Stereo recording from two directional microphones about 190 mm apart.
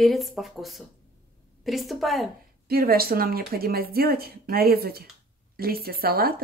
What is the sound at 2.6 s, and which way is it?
Speech, 50° right (ahead or behind).